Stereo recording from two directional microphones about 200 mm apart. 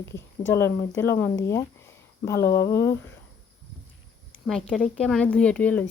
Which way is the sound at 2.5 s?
15° left (ahead or behind).